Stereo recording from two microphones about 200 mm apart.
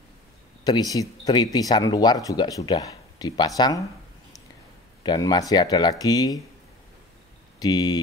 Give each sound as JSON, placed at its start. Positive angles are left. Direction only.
{"t": 0.7, "sound": "speech", "side_deg": 20}
{"t": 5.0, "sound": "speech", "side_deg": 20}
{"t": 7.5, "sound": "speech", "side_deg": 20}